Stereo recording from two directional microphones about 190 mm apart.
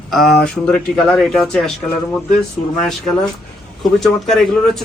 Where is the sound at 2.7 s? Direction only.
5° left (ahead or behind).